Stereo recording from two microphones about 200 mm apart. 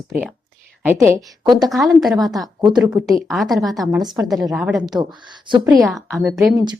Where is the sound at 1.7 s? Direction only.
Centre (ahead or behind).